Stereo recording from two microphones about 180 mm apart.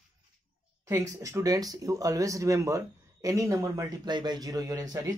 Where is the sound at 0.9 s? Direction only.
15° right (ahead or behind).